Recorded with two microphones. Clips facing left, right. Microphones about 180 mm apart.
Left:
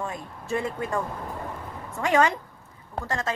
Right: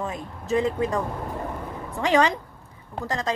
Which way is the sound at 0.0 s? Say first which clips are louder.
Right 2 dB; 20° right (ahead or behind).